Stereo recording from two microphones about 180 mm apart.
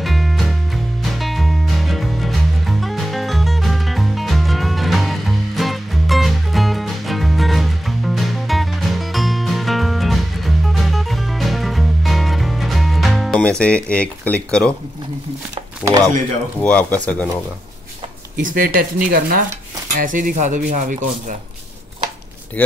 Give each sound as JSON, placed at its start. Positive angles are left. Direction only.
{"t": 0.0, "sound": "music", "side_deg": 0}
{"t": 15.8, "sound": "speech", "side_deg": 10}
{"t": 18.4, "sound": "speech", "side_deg": -50}